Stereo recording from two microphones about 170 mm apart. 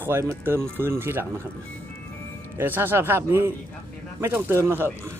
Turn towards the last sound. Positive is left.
turn(degrees=-15)  # may be behind; listen again after turning